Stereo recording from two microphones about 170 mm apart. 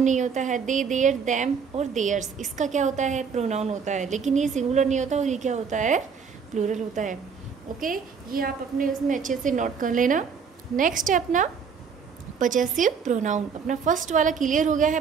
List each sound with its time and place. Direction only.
0.0 s a woman's voice: 45° right (ahead or behind)